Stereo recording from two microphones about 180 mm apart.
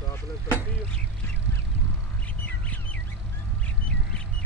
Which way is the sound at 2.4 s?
10° left (ahead or behind).